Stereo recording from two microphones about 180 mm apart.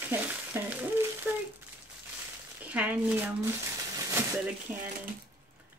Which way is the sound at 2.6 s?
10° right (ahead or behind).